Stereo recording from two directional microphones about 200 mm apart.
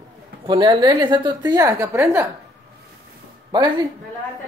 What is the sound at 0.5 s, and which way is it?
A woman's voice, 25° right (ahead or behind).